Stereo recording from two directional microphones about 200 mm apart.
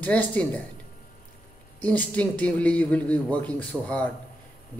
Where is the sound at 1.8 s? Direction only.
5° left (ahead or behind).